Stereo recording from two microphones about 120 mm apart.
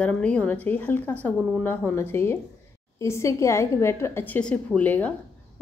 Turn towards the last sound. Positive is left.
turn(degrees=15)  # may be behind; listen again after turning